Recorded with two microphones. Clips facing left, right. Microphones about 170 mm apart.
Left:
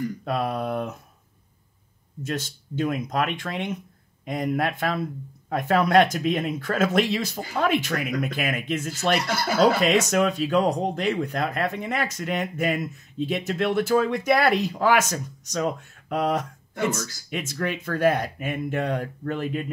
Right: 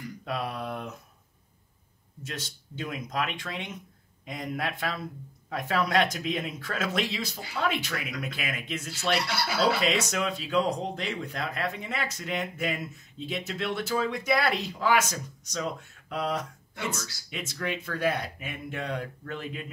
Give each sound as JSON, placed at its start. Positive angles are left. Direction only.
{"t": 0.2, "sound": "speech", "side_deg": 50}
{"t": 2.2, "sound": "speech", "side_deg": 50}